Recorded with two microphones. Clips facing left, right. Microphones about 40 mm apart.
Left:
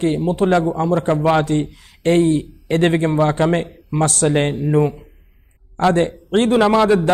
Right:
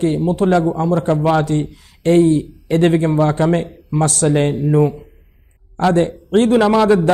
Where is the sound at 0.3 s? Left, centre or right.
Left.